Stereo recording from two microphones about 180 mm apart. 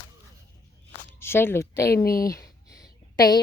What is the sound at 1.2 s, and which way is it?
Speech, 15° left (ahead or behind).